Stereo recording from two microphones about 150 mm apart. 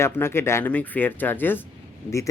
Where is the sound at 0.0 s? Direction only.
15° left (ahead or behind).